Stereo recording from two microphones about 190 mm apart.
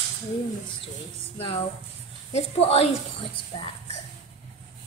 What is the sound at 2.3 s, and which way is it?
A woman's voice, 35° left (ahead or behind).